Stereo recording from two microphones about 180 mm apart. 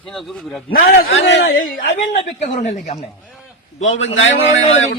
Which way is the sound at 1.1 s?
85° left.